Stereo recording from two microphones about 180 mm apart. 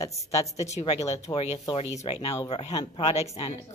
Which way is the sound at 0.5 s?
40° left (ahead or behind).